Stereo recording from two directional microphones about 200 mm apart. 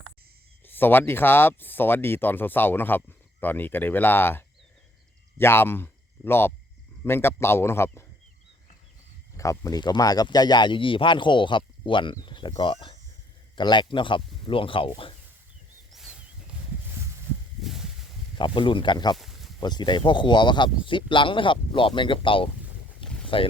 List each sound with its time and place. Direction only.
0.6 s speech: 10° left (ahead or behind)
9.4 s speech: 15° left (ahead or behind)
15.9 s a sound: 5° right (ahead or behind)
17.6 s a sound: centre (ahead or behind)
18.3 s speech: 25° left (ahead or behind)
19.1 s snake: centre (ahead or behind)
19.5 s speech: 20° left (ahead or behind)